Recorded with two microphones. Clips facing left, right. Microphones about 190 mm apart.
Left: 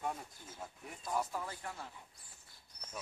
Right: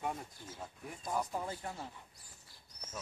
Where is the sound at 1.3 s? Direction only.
20° right (ahead or behind).